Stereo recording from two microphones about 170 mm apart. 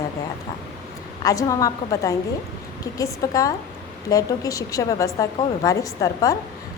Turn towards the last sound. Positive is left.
turn(degrees=20)  # may be behind; listen again after turning